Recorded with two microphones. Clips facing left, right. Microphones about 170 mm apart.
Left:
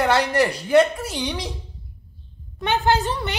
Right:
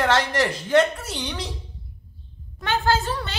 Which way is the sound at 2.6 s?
15° left (ahead or behind).